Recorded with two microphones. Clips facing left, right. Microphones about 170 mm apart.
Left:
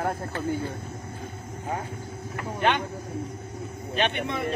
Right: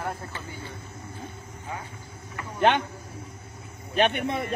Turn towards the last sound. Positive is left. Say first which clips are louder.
# right 3 dB
turn(degrees=-50)  # may be behind; listen again after turning